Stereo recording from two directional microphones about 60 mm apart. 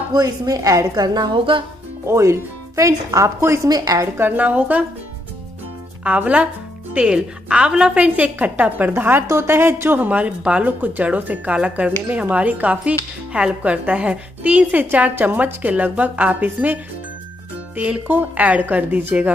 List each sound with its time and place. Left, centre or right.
0.2 s a woman's voice: right
2.0 s speech: right
3.6 s a woman's voice: right
4.2 s a woman's voice: right
6.0 s a woman's voice: right
17.7 s speech: centre
18.0 s a woman's voice: right